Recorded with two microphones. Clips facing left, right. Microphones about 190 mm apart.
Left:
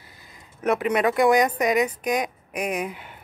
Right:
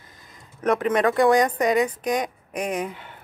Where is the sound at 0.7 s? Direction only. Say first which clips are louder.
Right 1 dB; 10° left (ahead or behind).